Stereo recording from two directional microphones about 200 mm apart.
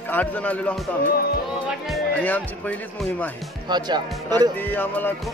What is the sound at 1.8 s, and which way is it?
Speech, 5° left (ahead or behind).